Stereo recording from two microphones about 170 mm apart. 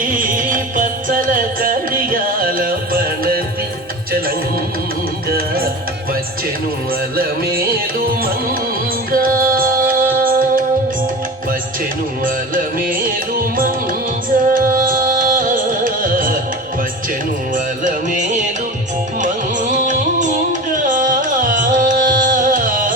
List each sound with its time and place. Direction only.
0.0 s music: 55° right (ahead or behind)
9.1 s music: 60° right (ahead or behind)
12.2 s music: 55° right (ahead or behind)
17.5 s music: 50° right (ahead or behind)